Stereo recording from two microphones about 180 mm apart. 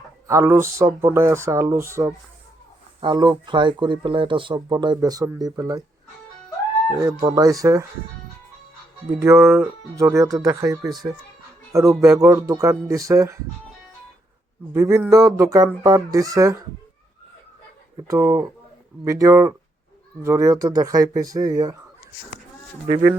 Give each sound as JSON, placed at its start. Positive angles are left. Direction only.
{"t": 0.3, "sound": "speech", "side_deg": -15}
{"t": 7.0, "sound": "speech", "side_deg": -20}
{"t": 9.1, "sound": "speech", "side_deg": -15}
{"t": 14.7, "sound": "speech", "side_deg": -15}
{"t": 18.1, "sound": "speech", "side_deg": -15}